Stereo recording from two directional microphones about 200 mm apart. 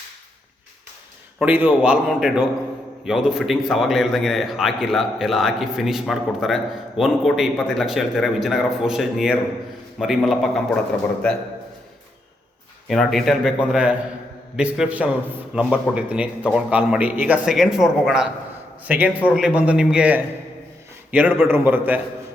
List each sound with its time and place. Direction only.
1.4 s a man's voice: 10° right (ahead or behind)
12.9 s a man's voice: centre (ahead or behind)